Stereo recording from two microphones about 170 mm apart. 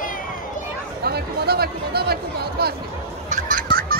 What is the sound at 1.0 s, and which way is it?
Chatter, 65° right (ahead or behind).